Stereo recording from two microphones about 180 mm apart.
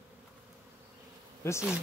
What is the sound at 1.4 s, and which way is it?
Bee, 15° left (ahead or behind).